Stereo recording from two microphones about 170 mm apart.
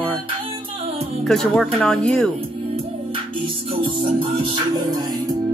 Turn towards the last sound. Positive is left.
turn(degrees=-30)  # may be behind; listen again after turning